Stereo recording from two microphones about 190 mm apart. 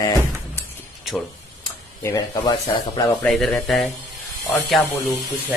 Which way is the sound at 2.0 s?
20° left (ahead or behind).